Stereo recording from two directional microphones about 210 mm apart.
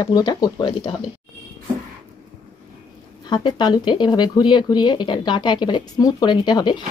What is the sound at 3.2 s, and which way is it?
Speech, 20° left (ahead or behind).